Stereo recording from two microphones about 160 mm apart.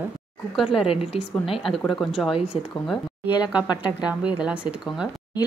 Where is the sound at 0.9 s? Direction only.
35° left (ahead or behind).